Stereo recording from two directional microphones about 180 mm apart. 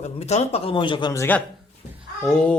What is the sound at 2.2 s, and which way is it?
Speech, centre (ahead or behind).